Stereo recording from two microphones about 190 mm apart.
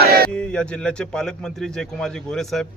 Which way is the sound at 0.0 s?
55° right (ahead or behind).